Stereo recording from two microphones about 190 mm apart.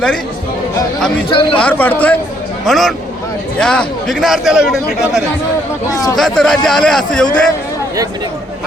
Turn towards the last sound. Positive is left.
turn(degrees=5)  # may be behind; listen again after turning